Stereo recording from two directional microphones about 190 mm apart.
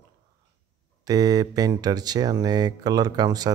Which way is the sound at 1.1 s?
20° right (ahead or behind).